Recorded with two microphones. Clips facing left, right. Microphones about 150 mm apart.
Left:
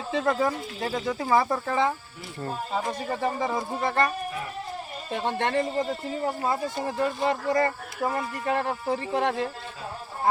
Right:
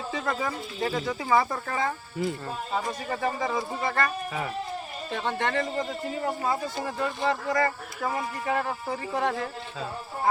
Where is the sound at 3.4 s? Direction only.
25° left (ahead or behind).